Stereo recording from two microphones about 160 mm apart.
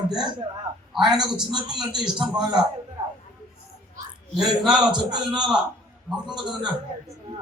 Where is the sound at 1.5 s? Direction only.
25° right (ahead or behind).